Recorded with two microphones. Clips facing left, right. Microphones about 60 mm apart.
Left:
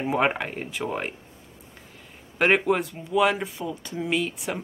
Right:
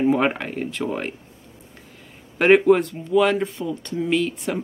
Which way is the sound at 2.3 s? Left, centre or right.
Centre.